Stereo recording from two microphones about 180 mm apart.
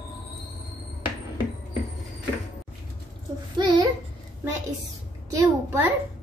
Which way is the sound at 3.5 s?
25° right (ahead or behind).